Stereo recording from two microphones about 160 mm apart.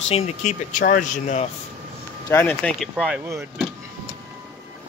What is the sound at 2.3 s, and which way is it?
Speech, 15° left (ahead or behind).